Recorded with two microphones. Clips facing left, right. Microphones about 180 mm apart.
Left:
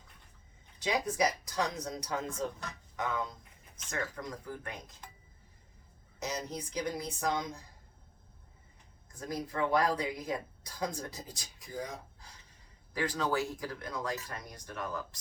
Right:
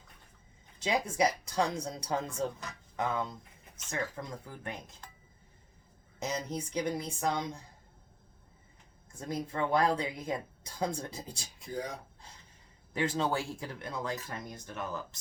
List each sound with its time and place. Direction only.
0.8 s speech: 25° right (ahead or behind)
6.1 s speech: 25° right (ahead or behind)
9.3 s speech: 25° right (ahead or behind)
12.9 s speech: 25° right (ahead or behind)